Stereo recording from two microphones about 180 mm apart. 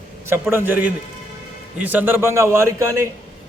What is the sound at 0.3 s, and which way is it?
A man's voice, 10° right (ahead or behind).